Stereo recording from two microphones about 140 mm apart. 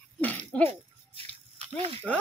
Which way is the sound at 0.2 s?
10° left (ahead or behind).